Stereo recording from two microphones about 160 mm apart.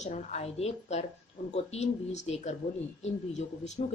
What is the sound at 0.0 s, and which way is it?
A woman's voice, 45° left (ahead or behind).